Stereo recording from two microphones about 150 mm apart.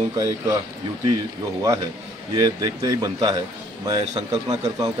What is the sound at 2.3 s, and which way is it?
A man's voice, 25° right (ahead or behind).